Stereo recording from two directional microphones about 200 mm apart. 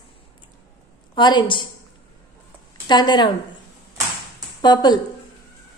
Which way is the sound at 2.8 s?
20° left (ahead or behind).